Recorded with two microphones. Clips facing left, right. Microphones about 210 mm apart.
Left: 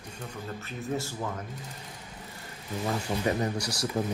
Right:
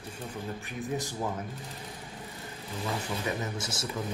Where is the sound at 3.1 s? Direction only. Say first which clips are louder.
Left 4 dB; 35° left (ahead or behind).